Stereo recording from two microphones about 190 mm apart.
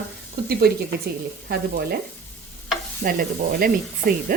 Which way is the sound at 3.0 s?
50° right (ahead or behind).